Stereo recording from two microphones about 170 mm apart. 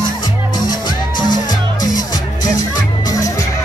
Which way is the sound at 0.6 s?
25° left (ahead or behind).